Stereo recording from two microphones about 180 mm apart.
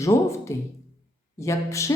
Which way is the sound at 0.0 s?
15° left (ahead or behind).